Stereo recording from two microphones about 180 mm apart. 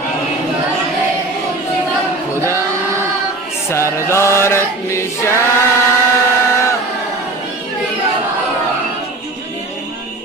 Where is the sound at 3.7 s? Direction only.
15° left (ahead or behind).